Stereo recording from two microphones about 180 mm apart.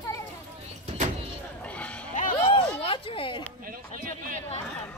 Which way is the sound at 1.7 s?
5° left (ahead or behind).